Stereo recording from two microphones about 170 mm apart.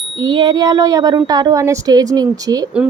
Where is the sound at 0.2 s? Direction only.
25° right (ahead or behind).